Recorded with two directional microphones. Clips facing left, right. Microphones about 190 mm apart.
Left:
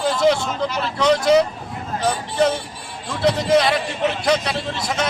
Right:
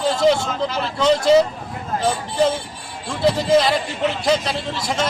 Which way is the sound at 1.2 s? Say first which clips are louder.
Right 2 dB; centre (ahead or behind).